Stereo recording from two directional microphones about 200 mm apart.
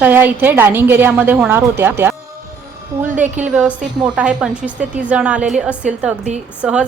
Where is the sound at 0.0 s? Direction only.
10° right (ahead or behind).